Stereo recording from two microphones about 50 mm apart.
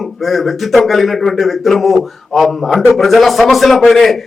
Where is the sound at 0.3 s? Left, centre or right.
Centre.